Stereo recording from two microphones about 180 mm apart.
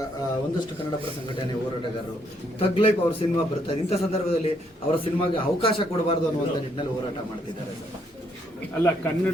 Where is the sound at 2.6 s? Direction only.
30° left (ahead or behind).